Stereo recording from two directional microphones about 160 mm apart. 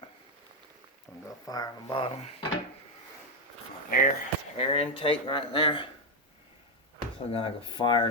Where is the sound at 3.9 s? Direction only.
60° left (ahead or behind).